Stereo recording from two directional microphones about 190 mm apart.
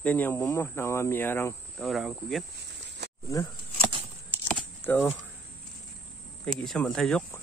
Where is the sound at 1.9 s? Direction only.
Centre (ahead or behind).